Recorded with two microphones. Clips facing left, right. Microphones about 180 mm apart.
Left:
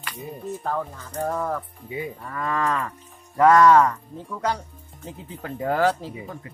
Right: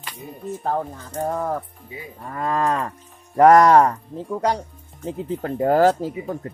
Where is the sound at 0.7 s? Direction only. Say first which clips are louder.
Right 5 dB; 25° right (ahead or behind).